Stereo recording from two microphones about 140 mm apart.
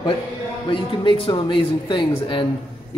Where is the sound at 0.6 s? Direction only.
40° left (ahead or behind).